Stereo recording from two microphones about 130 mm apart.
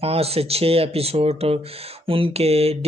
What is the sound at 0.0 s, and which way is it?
Speech, 50° right (ahead or behind).